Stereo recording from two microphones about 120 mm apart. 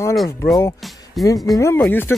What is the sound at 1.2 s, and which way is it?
Speech, 30° left (ahead or behind).